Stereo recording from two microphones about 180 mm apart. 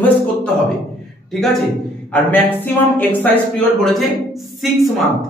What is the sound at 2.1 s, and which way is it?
Speech, 10° left (ahead or behind).